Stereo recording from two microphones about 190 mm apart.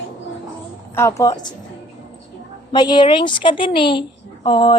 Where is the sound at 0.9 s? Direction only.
15° left (ahead or behind).